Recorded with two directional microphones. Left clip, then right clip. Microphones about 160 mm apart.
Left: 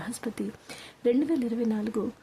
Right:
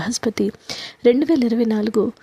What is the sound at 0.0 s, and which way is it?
A woman's voice, 45° right (ahead or behind).